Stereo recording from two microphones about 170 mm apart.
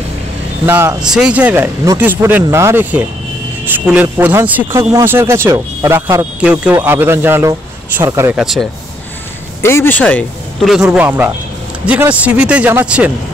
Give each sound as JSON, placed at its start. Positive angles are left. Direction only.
{"t": 0.7, "sound": "speech", "side_deg": -15}
{"t": 8.4, "sound": "speech", "side_deg": 0}
{"t": 9.6, "sound": "speech", "side_deg": 15}